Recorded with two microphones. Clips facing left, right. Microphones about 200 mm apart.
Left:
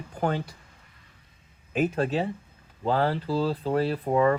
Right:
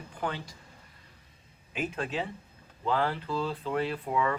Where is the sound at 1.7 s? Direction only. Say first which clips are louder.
Left 8 dB; 40° left (ahead or behind).